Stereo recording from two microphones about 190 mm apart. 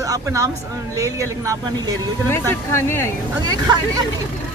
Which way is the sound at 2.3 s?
10° left (ahead or behind).